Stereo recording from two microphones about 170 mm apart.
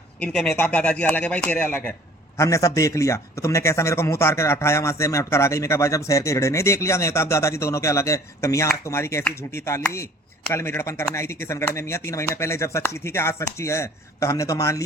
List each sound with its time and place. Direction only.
0.2 s speech: centre (ahead or behind); by 14.8 s 15° left (ahead or behind)